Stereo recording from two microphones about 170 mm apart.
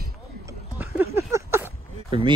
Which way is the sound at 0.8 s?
10° right (ahead or behind).